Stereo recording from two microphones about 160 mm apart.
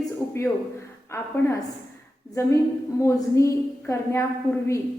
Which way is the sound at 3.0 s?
20° left (ahead or behind).